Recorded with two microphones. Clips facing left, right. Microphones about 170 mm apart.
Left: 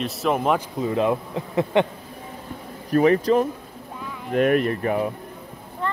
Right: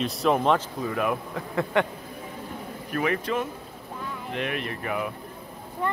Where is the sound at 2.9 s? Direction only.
35° left (ahead or behind).